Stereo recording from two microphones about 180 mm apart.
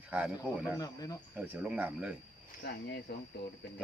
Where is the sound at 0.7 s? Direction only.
20° left (ahead or behind).